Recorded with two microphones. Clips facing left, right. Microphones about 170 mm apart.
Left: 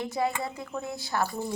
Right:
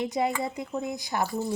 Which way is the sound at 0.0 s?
20° right (ahead or behind).